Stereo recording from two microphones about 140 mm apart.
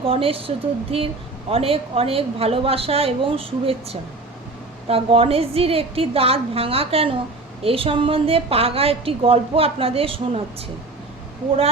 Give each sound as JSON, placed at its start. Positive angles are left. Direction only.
{"t": 0.0, "sound": "a woman's voice", "side_deg": -40}